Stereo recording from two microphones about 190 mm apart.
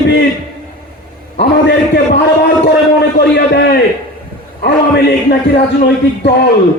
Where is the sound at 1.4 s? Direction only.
65° left (ahead or behind).